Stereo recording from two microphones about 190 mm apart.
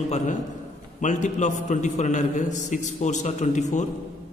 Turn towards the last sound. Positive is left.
turn(degrees=40)  # may be behind; listen again after turning